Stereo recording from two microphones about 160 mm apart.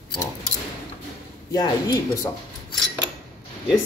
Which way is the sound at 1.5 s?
25° left (ahead or behind).